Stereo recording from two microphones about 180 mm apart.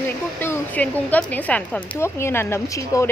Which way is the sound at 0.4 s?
10° left (ahead or behind).